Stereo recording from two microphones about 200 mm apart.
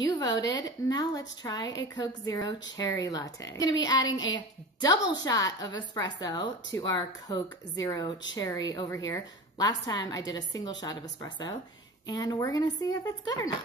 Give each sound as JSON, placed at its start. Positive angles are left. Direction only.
{"t": 0.1, "sound": "a woman's voice", "side_deg": 20}